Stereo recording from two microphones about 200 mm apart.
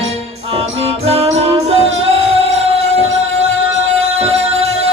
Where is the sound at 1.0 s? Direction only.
30° right (ahead or behind).